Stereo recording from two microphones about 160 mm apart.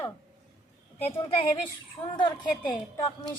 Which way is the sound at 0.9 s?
35° left (ahead or behind).